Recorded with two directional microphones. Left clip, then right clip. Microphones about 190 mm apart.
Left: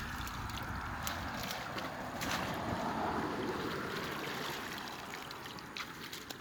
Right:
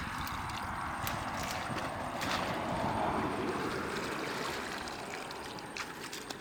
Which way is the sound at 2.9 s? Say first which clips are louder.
Right 3 dB; 35° right (ahead or behind).